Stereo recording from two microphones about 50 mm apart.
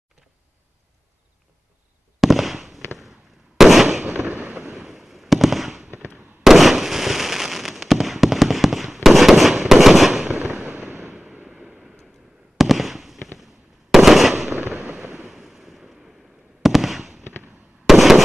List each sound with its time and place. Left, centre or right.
2.1 s fireworks: centre
4.3 s fireworks: right
4.7 s fireworks: centre
10.5 s fireworks: right
11.4 s a sound: centre
12.5 s fireworks: centre
15.2 s waves: centre
16.6 s fireworks: centre